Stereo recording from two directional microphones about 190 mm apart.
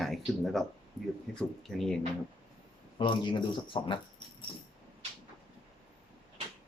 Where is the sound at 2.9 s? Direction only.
25° left (ahead or behind).